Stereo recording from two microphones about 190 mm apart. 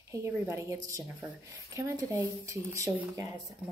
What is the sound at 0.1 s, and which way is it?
Speech, 15° right (ahead or behind).